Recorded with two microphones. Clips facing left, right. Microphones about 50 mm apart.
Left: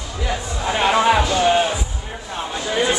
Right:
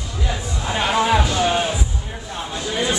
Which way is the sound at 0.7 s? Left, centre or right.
Left.